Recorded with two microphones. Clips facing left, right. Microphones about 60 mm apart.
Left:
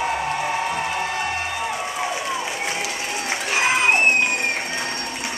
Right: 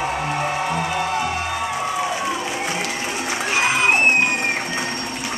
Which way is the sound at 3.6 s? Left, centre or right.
Centre.